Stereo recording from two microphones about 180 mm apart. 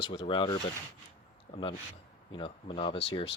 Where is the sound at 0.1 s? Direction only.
30° left (ahead or behind).